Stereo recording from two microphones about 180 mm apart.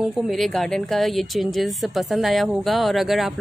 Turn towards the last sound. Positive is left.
turn(degrees=0)  # may be behind; listen again after turning